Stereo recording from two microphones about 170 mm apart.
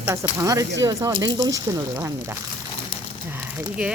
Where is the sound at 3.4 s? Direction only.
10° right (ahead or behind).